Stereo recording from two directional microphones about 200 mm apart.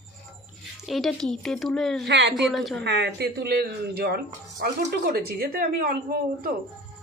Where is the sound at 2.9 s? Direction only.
60° right (ahead or behind).